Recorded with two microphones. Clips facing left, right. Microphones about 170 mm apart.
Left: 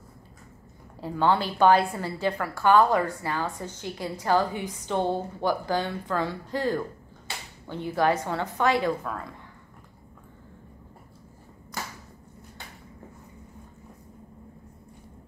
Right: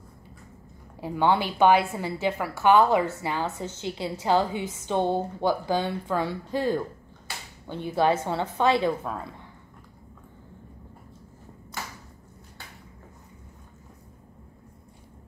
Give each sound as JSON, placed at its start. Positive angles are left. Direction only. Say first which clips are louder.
{"t": 1.0, "sound": "a woman's voice", "louder": "right 1 dB", "side_deg": -15}